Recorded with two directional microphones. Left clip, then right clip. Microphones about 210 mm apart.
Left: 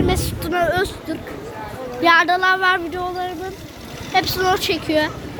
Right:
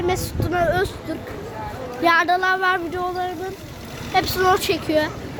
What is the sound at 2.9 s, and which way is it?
Speech, 20° right (ahead or behind).